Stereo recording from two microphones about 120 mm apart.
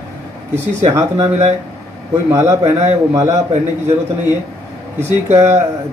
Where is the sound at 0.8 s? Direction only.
30° right (ahead or behind).